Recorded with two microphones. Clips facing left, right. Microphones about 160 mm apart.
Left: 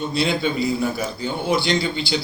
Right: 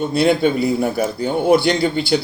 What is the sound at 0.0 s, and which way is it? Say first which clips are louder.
A man's voice: right 6 dB; 55° right (ahead or behind).